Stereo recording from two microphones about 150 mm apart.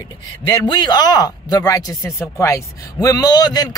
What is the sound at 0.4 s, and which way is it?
Speech, 30° left (ahead or behind).